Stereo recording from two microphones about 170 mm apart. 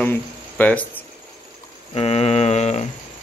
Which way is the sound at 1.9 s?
35° left (ahead or behind).